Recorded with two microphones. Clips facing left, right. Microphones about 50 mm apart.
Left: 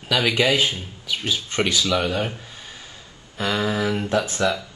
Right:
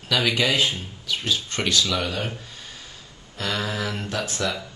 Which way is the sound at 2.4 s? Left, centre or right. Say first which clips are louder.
Left 1 dB; centre.